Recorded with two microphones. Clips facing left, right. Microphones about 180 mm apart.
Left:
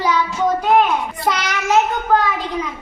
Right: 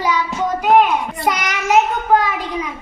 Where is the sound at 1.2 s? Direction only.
15° right (ahead or behind).